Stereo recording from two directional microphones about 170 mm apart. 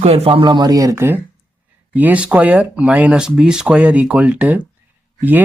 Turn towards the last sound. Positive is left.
turn(degrees=-10)  # may be behind; listen again after turning